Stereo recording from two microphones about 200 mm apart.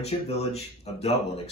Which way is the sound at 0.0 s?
30° left (ahead or behind).